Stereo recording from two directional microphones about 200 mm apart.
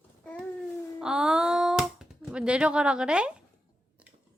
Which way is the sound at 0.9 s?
5° right (ahead or behind).